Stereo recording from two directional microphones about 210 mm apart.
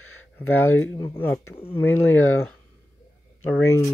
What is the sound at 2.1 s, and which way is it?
Speech, 80° left.